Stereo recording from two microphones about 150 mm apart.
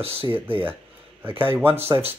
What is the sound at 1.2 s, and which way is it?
Speech, 15° right (ahead or behind).